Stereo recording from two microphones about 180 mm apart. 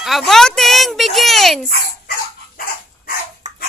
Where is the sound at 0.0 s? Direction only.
Centre (ahead or behind).